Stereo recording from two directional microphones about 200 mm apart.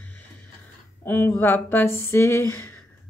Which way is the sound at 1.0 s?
10° left (ahead or behind).